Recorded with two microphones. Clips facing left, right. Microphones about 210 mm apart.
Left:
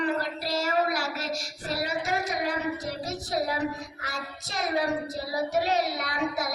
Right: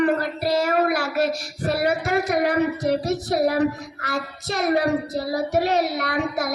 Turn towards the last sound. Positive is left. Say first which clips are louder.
# right 5 dB
turn(degrees=-55)  # may be behind; listen again after turning